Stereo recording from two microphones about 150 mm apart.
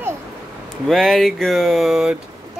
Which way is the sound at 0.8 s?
Centre (ahead or behind).